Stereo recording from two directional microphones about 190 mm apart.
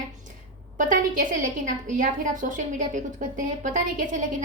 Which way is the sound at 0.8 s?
45° right (ahead or behind).